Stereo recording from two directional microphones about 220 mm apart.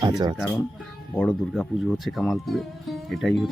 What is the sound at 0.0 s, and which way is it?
Speech, 20° right (ahead or behind).